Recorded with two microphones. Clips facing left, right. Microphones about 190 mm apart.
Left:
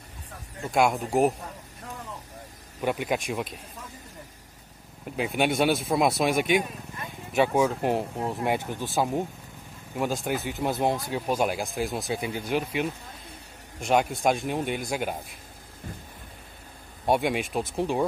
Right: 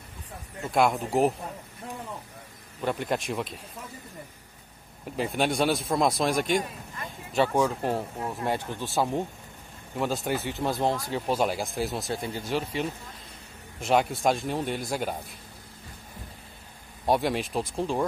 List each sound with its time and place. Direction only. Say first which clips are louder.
0.7 s speech: even; centre (ahead or behind)
2.8 s speech: left 1 dB; 10° left (ahead or behind)
5.1 s speech: left 1 dB; centre (ahead or behind)
8.8 s speech: even; centre (ahead or behind)
10.6 s speech: left 2 dB; 15° left (ahead or behind)
13.7 s speech: even; centre (ahead or behind)
17.0 s speech: left 1 dB; centre (ahead or behind)